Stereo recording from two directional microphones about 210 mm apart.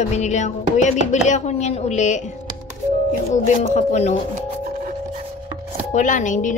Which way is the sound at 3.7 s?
30° left (ahead or behind).